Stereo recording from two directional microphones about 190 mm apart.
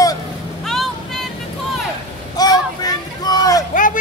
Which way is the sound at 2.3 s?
20° left (ahead or behind).